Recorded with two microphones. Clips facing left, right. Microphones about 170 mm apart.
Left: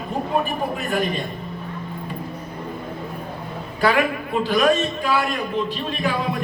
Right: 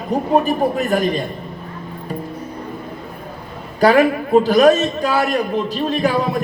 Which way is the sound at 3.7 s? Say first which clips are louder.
Right 7 dB; 40° right (ahead or behind).